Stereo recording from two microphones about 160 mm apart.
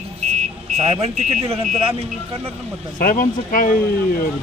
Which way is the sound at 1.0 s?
40° right (ahead or behind).